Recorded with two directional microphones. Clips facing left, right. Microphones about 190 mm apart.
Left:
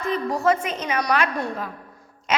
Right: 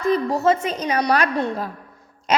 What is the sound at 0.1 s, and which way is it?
A woman's voice, 25° right (ahead or behind).